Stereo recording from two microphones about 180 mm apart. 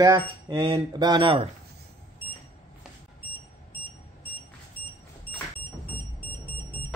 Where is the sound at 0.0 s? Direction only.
25° right (ahead or behind).